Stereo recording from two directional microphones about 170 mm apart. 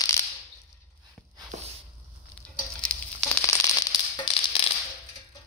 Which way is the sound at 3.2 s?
15° left (ahead or behind).